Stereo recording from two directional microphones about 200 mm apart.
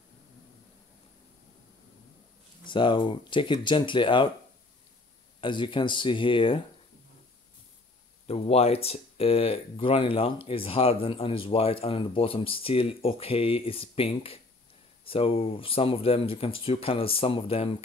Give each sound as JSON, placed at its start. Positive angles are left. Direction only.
{"t": 2.6, "sound": "speech", "side_deg": 25}
{"t": 5.4, "sound": "speech", "side_deg": 25}
{"t": 8.3, "sound": "speech", "side_deg": 30}